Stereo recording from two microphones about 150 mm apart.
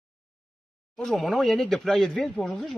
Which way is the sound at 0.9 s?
5° left (ahead or behind).